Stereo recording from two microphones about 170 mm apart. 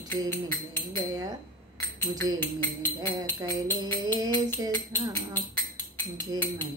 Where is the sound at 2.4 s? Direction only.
10° left (ahead or behind).